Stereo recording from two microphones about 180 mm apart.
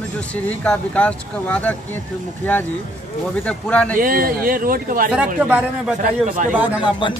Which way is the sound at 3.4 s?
5° left (ahead or behind).